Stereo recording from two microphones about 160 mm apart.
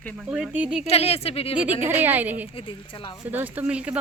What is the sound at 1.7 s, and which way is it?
Speech, 10° right (ahead or behind).